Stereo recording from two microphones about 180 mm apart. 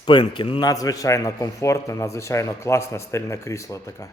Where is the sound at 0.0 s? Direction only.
25° left (ahead or behind).